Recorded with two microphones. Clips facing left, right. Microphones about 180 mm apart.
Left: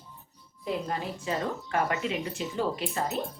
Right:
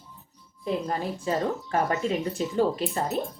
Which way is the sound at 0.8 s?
40° right (ahead or behind).